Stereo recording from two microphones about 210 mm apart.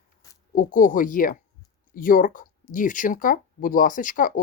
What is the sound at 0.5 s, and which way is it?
Speech, 40° left (ahead or behind).